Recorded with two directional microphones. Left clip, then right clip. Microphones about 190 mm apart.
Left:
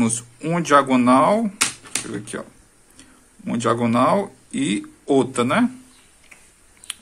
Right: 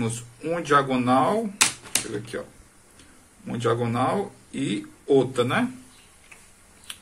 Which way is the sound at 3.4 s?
40° left (ahead or behind).